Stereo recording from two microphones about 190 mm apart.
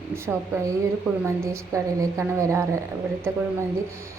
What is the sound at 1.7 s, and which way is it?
Speech, 15° right (ahead or behind).